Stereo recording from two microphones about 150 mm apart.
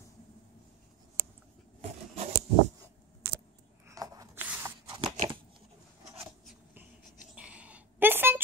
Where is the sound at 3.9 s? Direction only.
25° right (ahead or behind).